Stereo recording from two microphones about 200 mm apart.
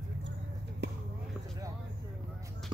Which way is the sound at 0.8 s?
60° right (ahead or behind).